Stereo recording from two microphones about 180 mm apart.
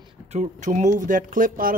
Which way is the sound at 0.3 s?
40° right (ahead or behind).